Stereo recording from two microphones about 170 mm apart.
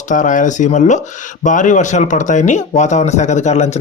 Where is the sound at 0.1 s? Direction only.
50° left (ahead or behind).